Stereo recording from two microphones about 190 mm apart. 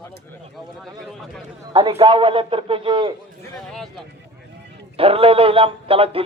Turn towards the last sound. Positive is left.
turn(degrees=-30)  # may be behind; listen again after turning